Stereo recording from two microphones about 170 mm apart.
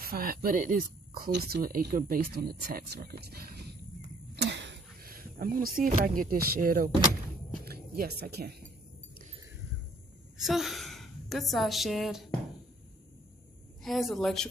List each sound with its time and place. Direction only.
0.0 s speech: 60° right (ahead or behind)
4.4 s speech: 90° right; by 8.6 s 70° right (ahead or behind)
10.3 s a woman's voice: centre (ahead or behind)
13.8 s speech: centre (ahead or behind)